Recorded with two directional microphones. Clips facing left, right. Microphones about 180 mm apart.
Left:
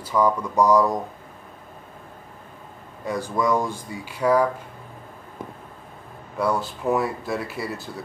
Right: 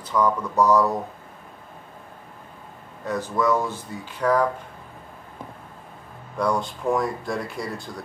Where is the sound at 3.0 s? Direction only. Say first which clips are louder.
Even; 10° left (ahead or behind).